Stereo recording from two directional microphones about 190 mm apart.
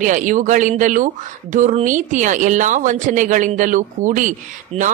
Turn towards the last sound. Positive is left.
turn(degrees=-40)  # may be behind; listen again after turning